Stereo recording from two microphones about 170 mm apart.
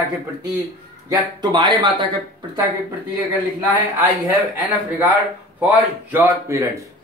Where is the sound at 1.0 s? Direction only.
25° right (ahead or behind).